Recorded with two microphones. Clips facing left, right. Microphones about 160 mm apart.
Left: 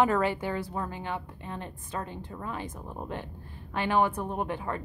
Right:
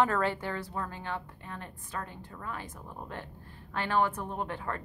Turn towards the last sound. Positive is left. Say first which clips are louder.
# left 4 dB
turn(degrees=15)  # may be behind; listen again after turning